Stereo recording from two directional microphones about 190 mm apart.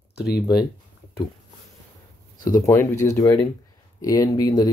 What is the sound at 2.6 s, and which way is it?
Speech, 15° left (ahead or behind).